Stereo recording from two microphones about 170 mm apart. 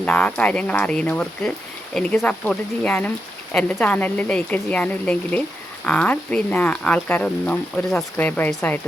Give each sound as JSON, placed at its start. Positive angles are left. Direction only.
{"t": 0.0, "sound": "speech", "side_deg": 10}